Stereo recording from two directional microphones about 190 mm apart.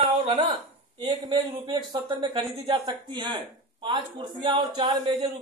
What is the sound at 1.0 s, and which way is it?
Speech, 20° right (ahead or behind).